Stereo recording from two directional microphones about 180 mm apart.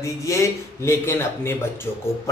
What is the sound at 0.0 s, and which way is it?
A man's voice, 15° left (ahead or behind).